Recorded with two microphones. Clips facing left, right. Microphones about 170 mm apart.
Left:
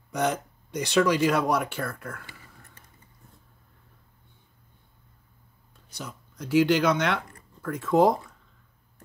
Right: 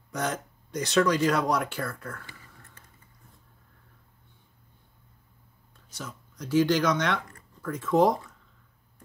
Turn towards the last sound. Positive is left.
turn(degrees=10)  # may be behind; listen again after turning